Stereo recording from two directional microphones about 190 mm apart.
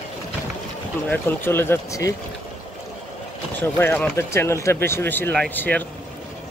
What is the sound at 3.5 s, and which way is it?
Speech, 10° left (ahead or behind).